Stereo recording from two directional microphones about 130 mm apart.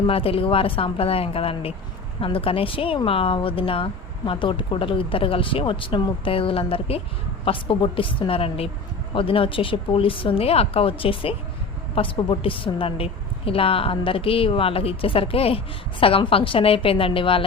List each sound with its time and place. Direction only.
0.1 s a woman's voice: 45° left (ahead or behind)